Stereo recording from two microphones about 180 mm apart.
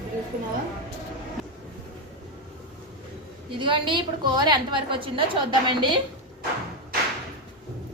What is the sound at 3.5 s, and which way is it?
A woman's voice, 30° right (ahead or behind).